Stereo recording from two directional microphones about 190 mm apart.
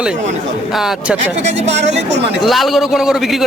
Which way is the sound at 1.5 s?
35° right (ahead or behind).